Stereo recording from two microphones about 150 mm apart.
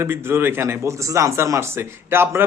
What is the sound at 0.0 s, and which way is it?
A man's voice, 15° right (ahead or behind).